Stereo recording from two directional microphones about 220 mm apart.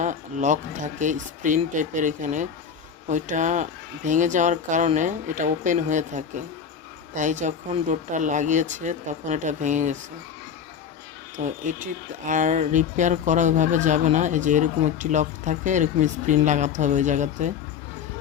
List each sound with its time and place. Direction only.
0.0 s speech: 35° right (ahead or behind)
11.4 s speech: 35° right (ahead or behind)